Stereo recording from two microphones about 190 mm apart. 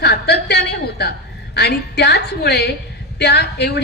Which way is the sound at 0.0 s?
60° left (ahead or behind).